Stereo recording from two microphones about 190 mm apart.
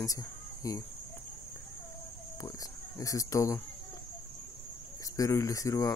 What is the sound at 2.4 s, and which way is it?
Speech, 20° left (ahead or behind).